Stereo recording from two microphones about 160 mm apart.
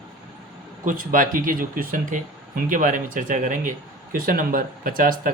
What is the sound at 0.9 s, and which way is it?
Speech, 60° right (ahead or behind).